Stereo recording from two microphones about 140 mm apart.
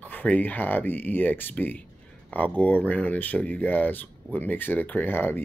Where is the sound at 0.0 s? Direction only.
10° left (ahead or behind).